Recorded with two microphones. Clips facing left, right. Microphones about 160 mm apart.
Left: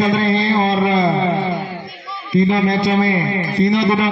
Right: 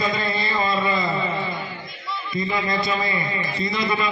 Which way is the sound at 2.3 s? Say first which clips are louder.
Left 10 dB; 90° left.